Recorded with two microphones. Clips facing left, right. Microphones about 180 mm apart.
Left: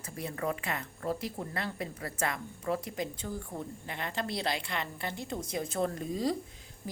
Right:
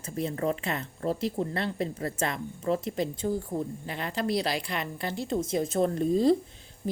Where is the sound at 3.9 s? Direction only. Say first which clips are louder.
Right 5 dB; 20° left (ahead or behind).